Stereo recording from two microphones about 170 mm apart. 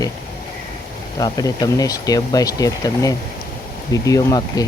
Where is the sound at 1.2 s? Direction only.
20° left (ahead or behind).